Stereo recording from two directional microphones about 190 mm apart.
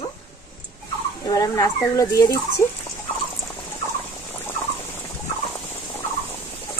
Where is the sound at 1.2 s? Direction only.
20° left (ahead or behind).